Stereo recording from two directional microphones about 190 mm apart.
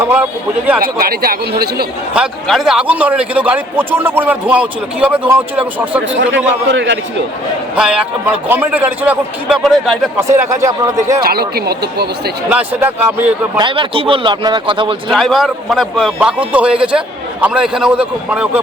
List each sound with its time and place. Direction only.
0.0 s a man's voice: 10° right (ahead or behind)
0.8 s speech: 50° right (ahead or behind)
2.1 s a man's voice: centre (ahead or behind)
6.3 s a man's voice: 70° right (ahead or behind)
7.8 s a man's voice: 5° right (ahead or behind)
10.3 s a man's voice: 15° right (ahead or behind)
11.2 s speech: 55° right (ahead or behind)
12.5 s a man's voice: 10° right (ahead or behind)
13.6 s a man's voice: 25° right (ahead or behind)
15.1 s speech: centre (ahead or behind)